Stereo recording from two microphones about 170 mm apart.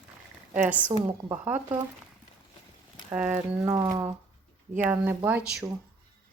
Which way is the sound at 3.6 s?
20° right (ahead or behind).